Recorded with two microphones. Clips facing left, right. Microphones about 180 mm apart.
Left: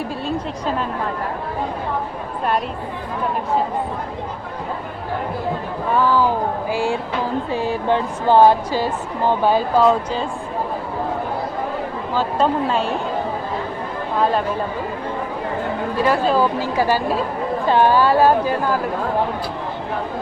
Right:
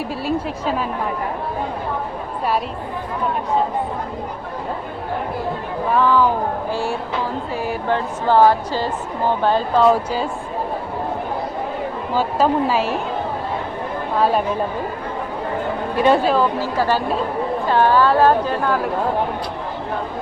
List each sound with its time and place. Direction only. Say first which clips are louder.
0.3 s a woman's voice: right 3 dB; 5° right (ahead or behind)
5.9 s a woman's voice: right 1 dB; 5° left (ahead or behind)
9.9 s speech: right 1 dB; 5° right (ahead or behind)
12.1 s a woman's voice: right 1 dB; 5° right (ahead or behind)
14.2 s speech: right 1 dB; 10° right (ahead or behind)
16.2 s a woman's voice: even; centre (ahead or behind)
16.7 s a woman's voice: left 1 dB; 10° left (ahead or behind)